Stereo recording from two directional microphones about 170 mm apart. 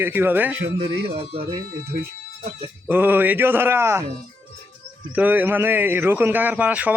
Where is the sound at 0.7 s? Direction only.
35° right (ahead or behind).